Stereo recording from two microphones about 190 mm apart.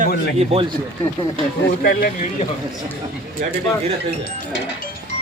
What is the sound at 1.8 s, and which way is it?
Speech, 45° left (ahead or behind).